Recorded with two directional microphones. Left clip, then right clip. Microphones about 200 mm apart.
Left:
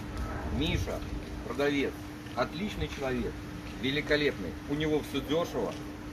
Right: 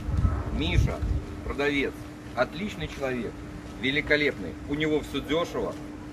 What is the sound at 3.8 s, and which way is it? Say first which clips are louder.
Speech: right 4 dB; 15° left (ahead or behind).